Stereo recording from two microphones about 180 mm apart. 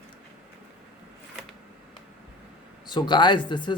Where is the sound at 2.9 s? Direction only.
25° left (ahead or behind).